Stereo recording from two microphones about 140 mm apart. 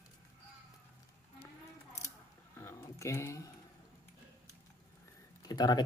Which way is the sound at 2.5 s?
20° left (ahead or behind).